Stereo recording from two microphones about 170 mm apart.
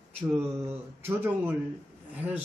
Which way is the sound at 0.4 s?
15° right (ahead or behind).